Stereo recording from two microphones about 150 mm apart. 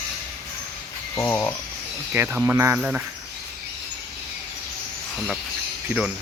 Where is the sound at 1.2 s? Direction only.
15° left (ahead or behind).